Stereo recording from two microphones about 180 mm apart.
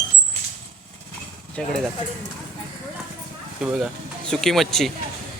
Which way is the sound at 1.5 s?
5° left (ahead or behind).